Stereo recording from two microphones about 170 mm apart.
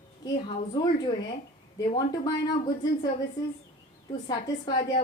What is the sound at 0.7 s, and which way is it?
A woman's voice, 25° left (ahead or behind).